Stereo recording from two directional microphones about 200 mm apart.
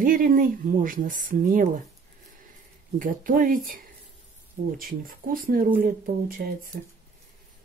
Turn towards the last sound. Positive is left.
turn(degrees=-40)  # may be behind; listen again after turning